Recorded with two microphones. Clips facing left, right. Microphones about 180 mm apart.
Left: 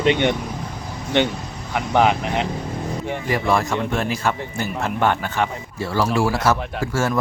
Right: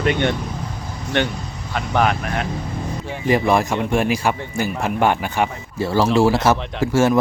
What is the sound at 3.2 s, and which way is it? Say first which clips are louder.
Speech: right 5 dB; 20° right (ahead or behind).